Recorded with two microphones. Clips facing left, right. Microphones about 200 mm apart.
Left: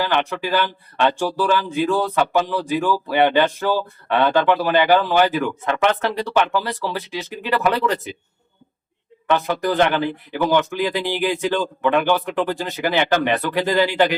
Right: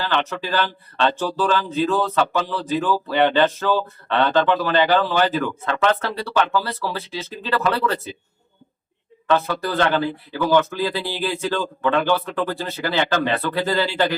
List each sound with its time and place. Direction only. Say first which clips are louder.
0.0 s speech: left 2 dB; 15° left (ahead or behind)
9.2 s speech: left 1 dB; 15° left (ahead or behind)